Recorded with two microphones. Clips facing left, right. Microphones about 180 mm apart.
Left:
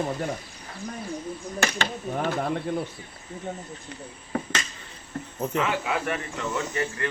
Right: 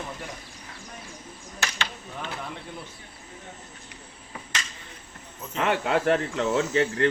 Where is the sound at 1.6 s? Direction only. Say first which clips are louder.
Left 5 dB; 50° left (ahead or behind).